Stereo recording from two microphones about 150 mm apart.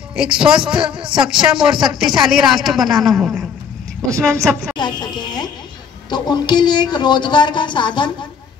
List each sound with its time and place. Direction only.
0.1 s a woman's voice: 5° right (ahead or behind)
4.1 s a woman's voice: 5° left (ahead or behind)
4.7 s a woman's voice: 30° left (ahead or behind)